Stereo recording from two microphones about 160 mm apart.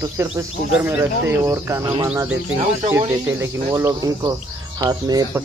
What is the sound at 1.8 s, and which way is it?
Speech, 25° right (ahead or behind).